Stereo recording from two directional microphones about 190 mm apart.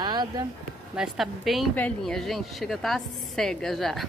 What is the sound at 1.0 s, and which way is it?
A woman's voice, centre (ahead or behind).